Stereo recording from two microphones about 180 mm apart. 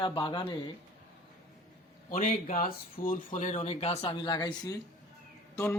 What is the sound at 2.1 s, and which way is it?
Speech, 45° left (ahead or behind).